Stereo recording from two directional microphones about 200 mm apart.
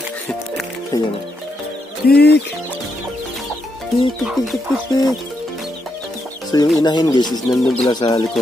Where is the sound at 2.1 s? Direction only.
50° left (ahead or behind).